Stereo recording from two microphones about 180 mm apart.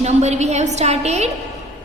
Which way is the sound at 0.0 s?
40° right (ahead or behind).